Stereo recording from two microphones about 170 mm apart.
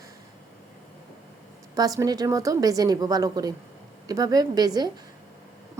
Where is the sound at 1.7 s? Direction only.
20° right (ahead or behind).